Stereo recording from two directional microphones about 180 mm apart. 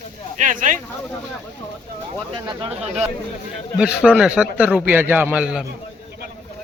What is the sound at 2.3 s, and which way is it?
Speech, 30° right (ahead or behind).